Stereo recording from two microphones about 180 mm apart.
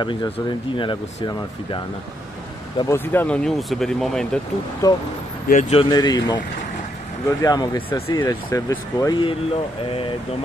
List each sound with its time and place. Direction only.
0.0 s speech: 25° left (ahead or behind)
2.9 s speech: 10° left (ahead or behind)
4.8 s speech: 20° left (ahead or behind)
5.5 s speech: 40° left (ahead or behind); by 6.4 s 25° left (ahead or behind)
7.4 s speech: 25° left (ahead or behind)